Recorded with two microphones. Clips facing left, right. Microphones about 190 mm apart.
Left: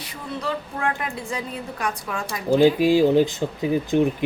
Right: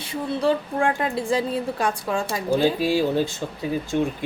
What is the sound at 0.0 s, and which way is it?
A woman's voice, 30° right (ahead or behind).